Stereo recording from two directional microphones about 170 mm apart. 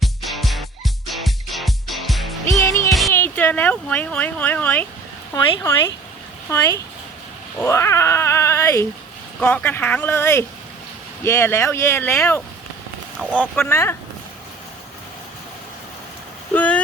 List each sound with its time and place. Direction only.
0.0 s music: centre (ahead or behind)
2.6 s music: 20° left (ahead or behind)
3.1 s speech: 15° left (ahead or behind)
6.5 s speech: 15° left (ahead or behind)
16.6 s vehicle: 10° left (ahead or behind)